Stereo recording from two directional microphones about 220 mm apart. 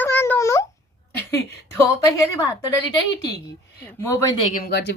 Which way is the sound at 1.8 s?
15° left (ahead or behind).